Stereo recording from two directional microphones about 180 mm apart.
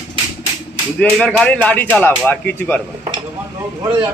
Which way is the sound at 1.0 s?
5° left (ahead or behind).